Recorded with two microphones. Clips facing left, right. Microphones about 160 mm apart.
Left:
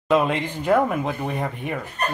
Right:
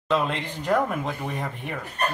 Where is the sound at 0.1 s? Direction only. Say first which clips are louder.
Left 5 dB; 10° left (ahead or behind).